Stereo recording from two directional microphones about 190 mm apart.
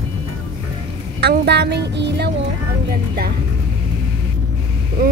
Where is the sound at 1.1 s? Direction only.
60° right (ahead or behind).